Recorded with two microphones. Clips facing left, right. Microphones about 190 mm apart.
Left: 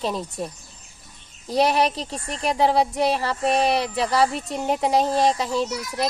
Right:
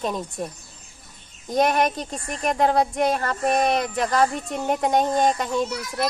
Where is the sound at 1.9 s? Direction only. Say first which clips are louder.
Even; 30° left (ahead or behind).